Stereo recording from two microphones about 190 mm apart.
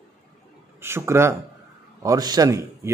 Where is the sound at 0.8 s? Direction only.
15° right (ahead or behind).